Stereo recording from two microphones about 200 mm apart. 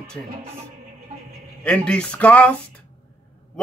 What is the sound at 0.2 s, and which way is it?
Speech, 5° left (ahead or behind).